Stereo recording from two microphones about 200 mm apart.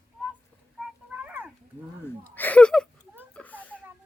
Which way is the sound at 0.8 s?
5° right (ahead or behind).